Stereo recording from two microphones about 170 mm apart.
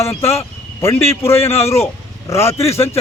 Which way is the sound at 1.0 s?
15° left (ahead or behind).